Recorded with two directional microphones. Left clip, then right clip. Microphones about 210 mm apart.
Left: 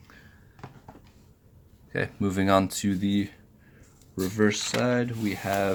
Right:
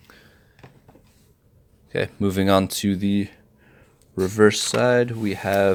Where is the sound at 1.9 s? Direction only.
35° right (ahead or behind).